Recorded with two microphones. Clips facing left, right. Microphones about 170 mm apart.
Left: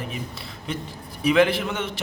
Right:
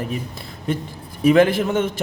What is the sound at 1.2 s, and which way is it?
Speech, 45° right (ahead or behind).